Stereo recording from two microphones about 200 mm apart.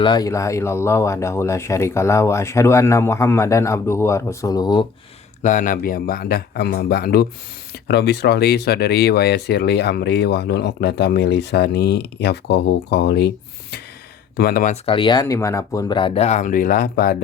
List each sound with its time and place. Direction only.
0.0 s speech: 20° left (ahead or behind)
5.4 s speech: 40° left (ahead or behind)
14.8 s speech: 25° left (ahead or behind); by 17.2 s 45° left (ahead or behind)